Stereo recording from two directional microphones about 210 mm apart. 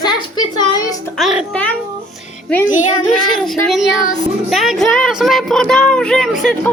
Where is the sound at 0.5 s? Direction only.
20° left (ahead or behind).